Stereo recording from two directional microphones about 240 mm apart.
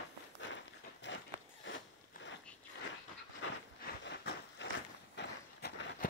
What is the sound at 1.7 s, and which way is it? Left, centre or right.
Zipper, left.